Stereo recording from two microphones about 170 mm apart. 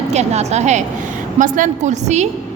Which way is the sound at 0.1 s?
40° right (ahead or behind).